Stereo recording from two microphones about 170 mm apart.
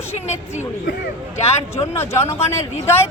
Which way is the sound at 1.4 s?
40° left (ahead or behind).